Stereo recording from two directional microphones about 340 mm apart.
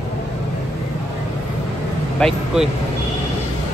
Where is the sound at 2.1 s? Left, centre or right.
Centre.